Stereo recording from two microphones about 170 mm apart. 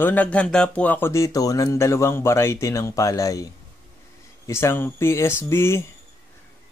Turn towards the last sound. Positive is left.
turn(degrees=15)  # may be behind; listen again after turning